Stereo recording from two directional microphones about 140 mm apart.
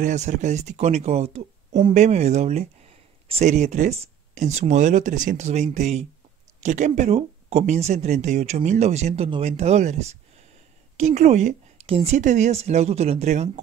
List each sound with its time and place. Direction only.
0.0 s speech: 60° right (ahead or behind)